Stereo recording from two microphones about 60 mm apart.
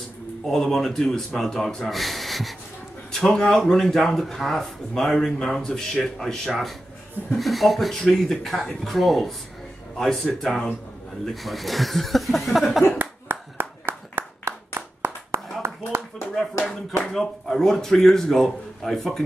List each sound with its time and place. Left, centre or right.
0.5 s speech: centre
12.9 s clapping: right
15.6 s a sound: right
17.1 s speech: centre